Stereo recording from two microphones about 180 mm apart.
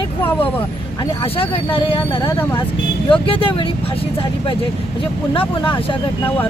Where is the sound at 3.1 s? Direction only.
30° left (ahead or behind).